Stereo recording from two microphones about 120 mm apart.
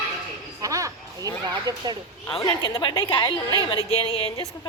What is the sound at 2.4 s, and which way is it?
A woman's voice, 35° left (ahead or behind).